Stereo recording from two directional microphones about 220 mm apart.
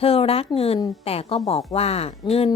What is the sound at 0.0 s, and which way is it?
A woman's voice, 25° left (ahead or behind).